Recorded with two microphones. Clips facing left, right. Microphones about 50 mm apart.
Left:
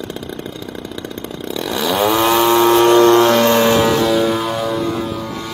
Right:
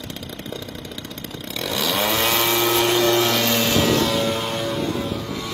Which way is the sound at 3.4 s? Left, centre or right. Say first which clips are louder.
Left 7 dB; left.